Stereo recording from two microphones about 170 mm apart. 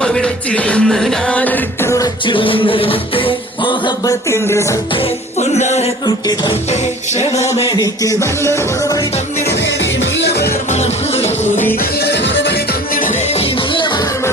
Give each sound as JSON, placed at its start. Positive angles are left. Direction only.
{"t": 0.0, "sound": "music", "side_deg": 5}
{"t": 2.2, "sound": "music", "side_deg": 30}
{"t": 4.9, "sound": "music", "side_deg": 40}
{"t": 6.1, "sound": "music", "side_deg": 25}
{"t": 6.7, "sound": "music", "side_deg": 40}
{"t": 7.7, "sound": "music", "side_deg": 20}
{"t": 9.5, "sound": "music", "side_deg": 90}
{"t": 10.7, "sound": "music", "side_deg": 40}
{"t": 11.8, "sound": "music", "side_deg": 70}
{"t": 13.3, "sound": "music", "side_deg": 30}